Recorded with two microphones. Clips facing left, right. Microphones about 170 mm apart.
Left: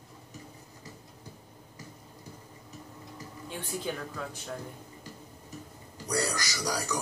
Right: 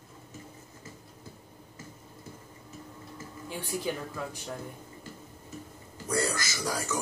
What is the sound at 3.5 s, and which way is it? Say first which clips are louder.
Speech: right 2 dB; 10° right (ahead or behind).